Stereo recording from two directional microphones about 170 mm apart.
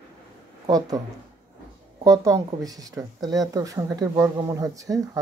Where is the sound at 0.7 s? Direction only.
20° right (ahead or behind).